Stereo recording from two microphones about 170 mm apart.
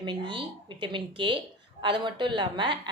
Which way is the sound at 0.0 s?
30° right (ahead or behind).